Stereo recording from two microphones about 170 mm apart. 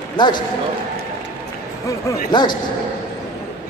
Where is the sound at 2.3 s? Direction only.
25° left (ahead or behind).